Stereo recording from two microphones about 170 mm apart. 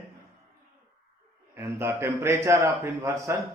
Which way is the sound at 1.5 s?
15° right (ahead or behind).